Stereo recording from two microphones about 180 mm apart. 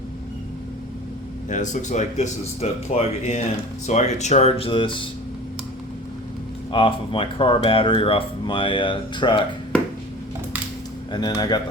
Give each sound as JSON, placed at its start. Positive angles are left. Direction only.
{"t": 1.5, "sound": "speech", "side_deg": 45}
{"t": 6.7, "sound": "speech", "side_deg": 30}
{"t": 11.1, "sound": "speech", "side_deg": 20}